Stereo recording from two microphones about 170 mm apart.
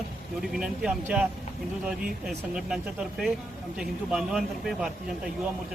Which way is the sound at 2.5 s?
Centre (ahead or behind).